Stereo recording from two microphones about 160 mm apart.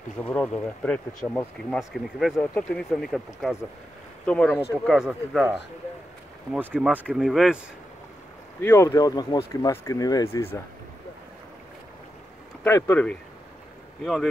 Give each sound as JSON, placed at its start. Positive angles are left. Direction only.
{"t": 0.2, "sound": "speech", "side_deg": 10}
{"t": 1.8, "sound": "speech", "side_deg": -5}
{"t": 8.5, "sound": "speech", "side_deg": 15}
{"t": 12.6, "sound": "speech", "side_deg": 15}